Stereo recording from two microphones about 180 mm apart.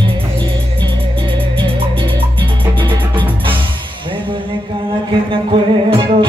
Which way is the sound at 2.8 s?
25° right (ahead or behind).